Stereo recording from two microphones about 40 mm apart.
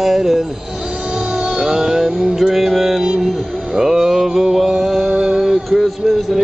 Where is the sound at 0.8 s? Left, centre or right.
Right.